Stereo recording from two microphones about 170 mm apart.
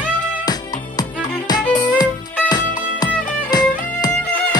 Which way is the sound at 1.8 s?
25° left (ahead or behind).